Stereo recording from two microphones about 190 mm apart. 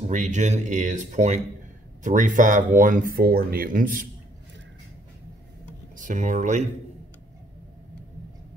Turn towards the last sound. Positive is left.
turn(degrees=-40)  # may be behind; listen again after turning